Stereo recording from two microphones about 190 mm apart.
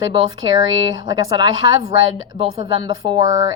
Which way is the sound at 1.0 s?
20° right (ahead or behind).